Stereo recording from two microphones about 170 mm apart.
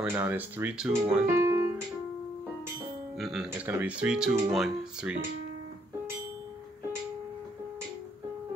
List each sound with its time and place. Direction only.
0.0 s speech: 10° right (ahead or behind)
1.2 s music: 15° right (ahead or behind)
3.2 s speech: centre (ahead or behind)
3.4 s speech: 10° right (ahead or behind)